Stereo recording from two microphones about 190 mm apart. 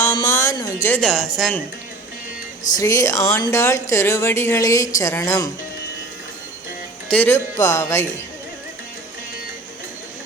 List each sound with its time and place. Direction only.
0.0 s speech: 15° left (ahead or behind)
2.7 s speech: 15° left (ahead or behind)
7.1 s speech: 10° left (ahead or behind)